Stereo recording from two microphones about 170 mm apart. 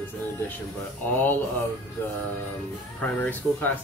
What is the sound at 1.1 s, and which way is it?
Speech, 10° left (ahead or behind).